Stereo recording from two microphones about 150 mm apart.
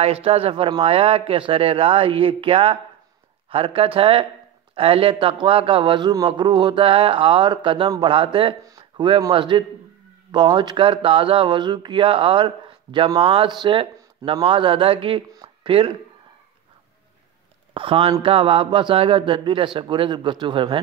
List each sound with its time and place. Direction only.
0.0 s speech: 40° right (ahead or behind)
17.7 s speech: 35° right (ahead or behind)